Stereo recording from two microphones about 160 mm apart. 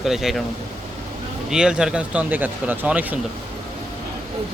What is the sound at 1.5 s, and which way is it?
Speech, 5° right (ahead or behind).